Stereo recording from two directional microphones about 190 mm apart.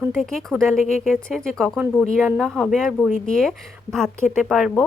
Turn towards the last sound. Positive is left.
turn(degrees=0)  # may be behind; listen again after turning